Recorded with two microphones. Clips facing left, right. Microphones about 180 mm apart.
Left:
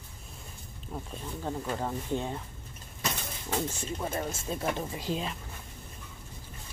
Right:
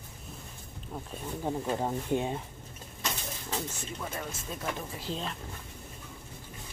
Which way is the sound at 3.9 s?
30° left (ahead or behind).